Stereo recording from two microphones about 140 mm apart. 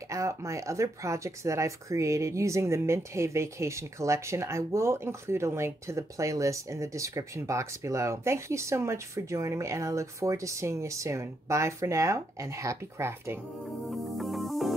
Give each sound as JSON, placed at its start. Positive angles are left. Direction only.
{"t": 0.1, "sound": "speech", "side_deg": -20}
{"t": 13.8, "sound": "music", "side_deg": 0}